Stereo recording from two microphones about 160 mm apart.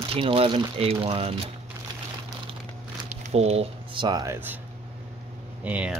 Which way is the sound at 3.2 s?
40° right (ahead or behind).